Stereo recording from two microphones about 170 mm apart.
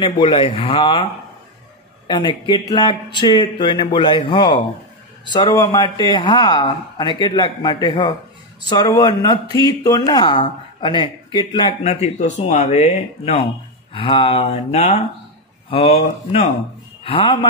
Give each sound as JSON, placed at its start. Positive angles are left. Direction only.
{"t": 0.0, "sound": "speech", "side_deg": 30}
{"t": 2.0, "sound": "a man's voice", "side_deg": 25}